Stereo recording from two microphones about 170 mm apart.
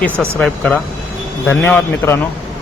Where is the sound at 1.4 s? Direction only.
10° left (ahead or behind).